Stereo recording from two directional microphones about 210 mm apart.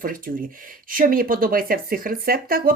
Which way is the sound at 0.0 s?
40° right (ahead or behind).